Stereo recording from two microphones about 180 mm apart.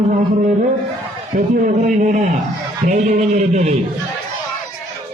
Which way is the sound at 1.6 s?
45° right (ahead or behind).